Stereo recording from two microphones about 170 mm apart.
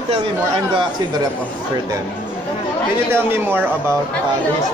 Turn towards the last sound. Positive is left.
turn(degrees=-15)  # may be behind; listen again after turning